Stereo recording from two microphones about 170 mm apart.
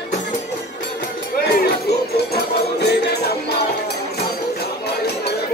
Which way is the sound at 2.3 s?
75° left (ahead or behind).